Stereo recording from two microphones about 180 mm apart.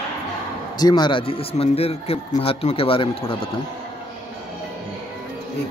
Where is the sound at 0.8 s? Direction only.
25° left (ahead or behind).